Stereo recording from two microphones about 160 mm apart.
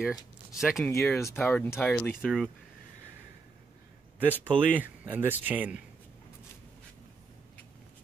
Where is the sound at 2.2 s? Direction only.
Centre (ahead or behind).